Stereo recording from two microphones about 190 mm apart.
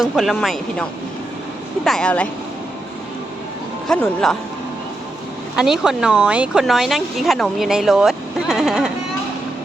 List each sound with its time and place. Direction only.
0.0 s speech: centre (ahead or behind)
3.8 s speech: 5° left (ahead or behind)
5.5 s speech: 5° right (ahead or behind)